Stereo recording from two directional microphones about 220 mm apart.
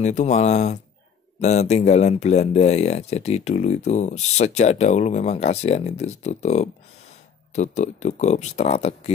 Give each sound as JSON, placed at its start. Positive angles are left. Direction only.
{"t": 0.0, "sound": "speech", "side_deg": 30}